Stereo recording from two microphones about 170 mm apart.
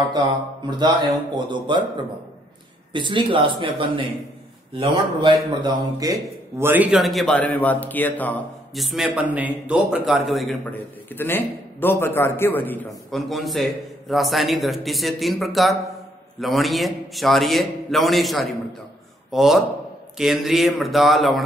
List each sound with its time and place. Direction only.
0.7 s a man's voice: 25° right (ahead or behind)
6.6 s a man's voice: 10° right (ahead or behind); by 8.4 s 10° left (ahead or behind)
8.7 s a man's voice: centre (ahead or behind)
11.1 s a man's voice: 10° left (ahead or behind)
13.1 s a man's voice: centre (ahead or behind)